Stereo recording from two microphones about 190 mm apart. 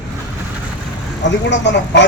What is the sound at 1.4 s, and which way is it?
Speech, 65° left (ahead or behind).